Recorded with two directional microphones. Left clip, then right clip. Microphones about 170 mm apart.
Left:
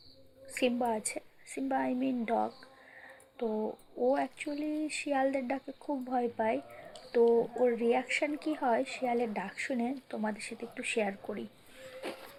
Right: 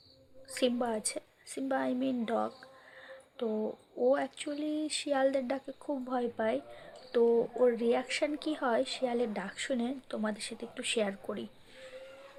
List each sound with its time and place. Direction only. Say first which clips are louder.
0.4 s a woman's voice: left 1 dB; 15° right (ahead or behind)